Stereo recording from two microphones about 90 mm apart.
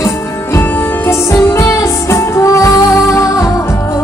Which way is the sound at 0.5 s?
25° left (ahead or behind).